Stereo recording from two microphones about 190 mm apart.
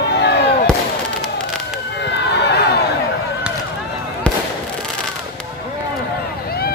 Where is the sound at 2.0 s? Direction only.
65° left (ahead or behind).